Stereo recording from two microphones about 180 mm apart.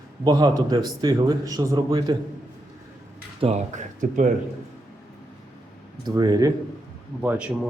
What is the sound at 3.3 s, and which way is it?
Speech, 40° right (ahead or behind).